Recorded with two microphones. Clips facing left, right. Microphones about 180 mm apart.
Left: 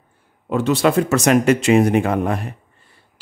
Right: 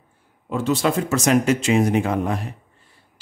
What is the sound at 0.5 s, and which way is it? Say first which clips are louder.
Speech: left 4 dB; 70° left (ahead or behind).